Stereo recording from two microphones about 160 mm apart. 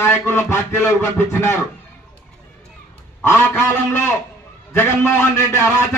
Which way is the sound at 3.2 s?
15° left (ahead or behind).